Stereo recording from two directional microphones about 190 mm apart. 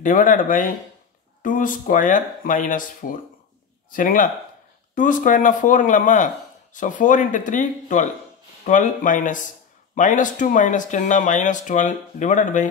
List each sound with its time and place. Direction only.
0.0 s speech: 45° left (ahead or behind)